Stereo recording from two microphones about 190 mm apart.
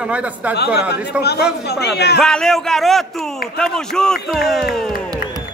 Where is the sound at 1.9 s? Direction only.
60° left (ahead or behind).